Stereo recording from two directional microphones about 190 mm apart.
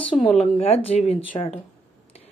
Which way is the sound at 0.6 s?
30° left (ahead or behind).